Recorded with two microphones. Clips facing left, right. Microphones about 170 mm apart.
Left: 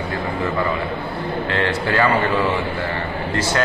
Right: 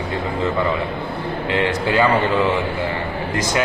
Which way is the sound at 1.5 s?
15° right (ahead or behind).